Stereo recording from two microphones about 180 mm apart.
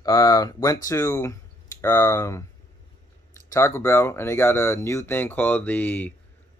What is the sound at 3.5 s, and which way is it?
Speech, 15° left (ahead or behind).